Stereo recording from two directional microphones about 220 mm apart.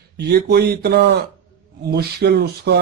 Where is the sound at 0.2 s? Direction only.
45° right (ahead or behind).